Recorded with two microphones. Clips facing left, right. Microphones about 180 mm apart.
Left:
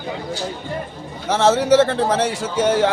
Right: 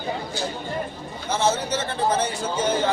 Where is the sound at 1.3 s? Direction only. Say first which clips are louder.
Left 8 dB; 80° left.